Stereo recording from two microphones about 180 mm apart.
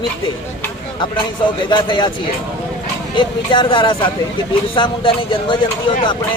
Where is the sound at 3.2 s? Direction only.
25° left (ahead or behind).